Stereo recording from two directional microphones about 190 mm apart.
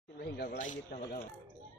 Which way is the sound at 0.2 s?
55° left (ahead or behind).